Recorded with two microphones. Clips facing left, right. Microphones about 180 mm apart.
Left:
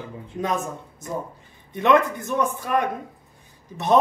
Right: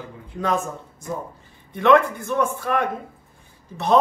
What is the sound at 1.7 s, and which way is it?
Speech, 20° left (ahead or behind).